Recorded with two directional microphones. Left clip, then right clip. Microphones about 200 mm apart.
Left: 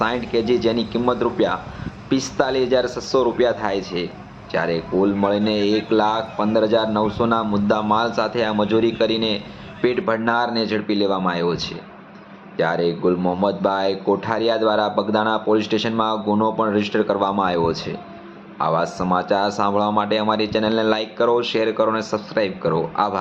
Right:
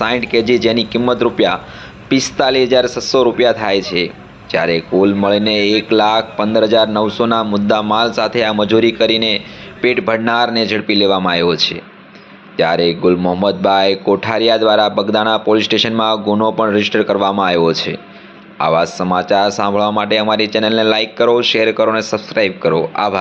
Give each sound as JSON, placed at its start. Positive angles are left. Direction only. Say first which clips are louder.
{"t": 0.0, "sound": "a man's voice", "louder": "right 6 dB", "side_deg": -15}